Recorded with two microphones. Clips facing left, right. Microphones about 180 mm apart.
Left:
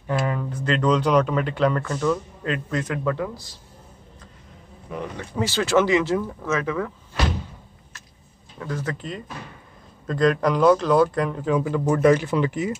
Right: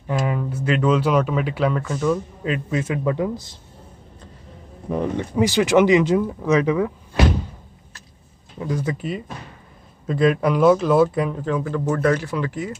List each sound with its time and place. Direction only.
0.3 s speech: 10° right (ahead or behind)
5.1 s speech: 15° right (ahead or behind)
8.5 s speech: 15° right (ahead or behind)
11.4 s speech: 15° left (ahead or behind)